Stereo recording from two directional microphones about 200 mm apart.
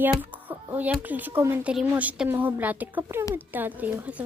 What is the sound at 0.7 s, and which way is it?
Speech, 10° right (ahead or behind).